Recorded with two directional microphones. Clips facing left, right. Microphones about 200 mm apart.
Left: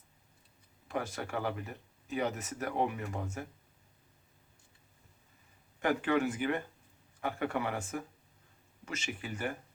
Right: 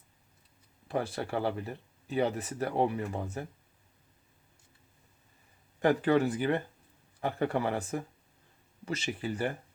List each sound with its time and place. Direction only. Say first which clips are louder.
0.9 s speech: right 4 dB; 35° right (ahead or behind)
5.8 s speech: right 4 dB; 35° right (ahead or behind)